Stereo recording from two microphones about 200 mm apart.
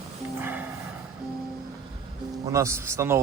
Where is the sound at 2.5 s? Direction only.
15° right (ahead or behind).